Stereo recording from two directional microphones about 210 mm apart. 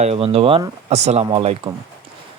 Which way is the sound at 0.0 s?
30° right (ahead or behind).